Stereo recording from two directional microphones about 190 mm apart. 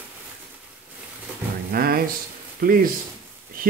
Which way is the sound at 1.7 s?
50° right (ahead or behind).